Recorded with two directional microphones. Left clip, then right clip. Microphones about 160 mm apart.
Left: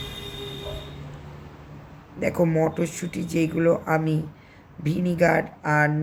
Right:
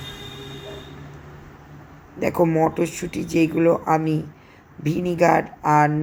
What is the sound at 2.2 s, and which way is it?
Speech, 15° right (ahead or behind).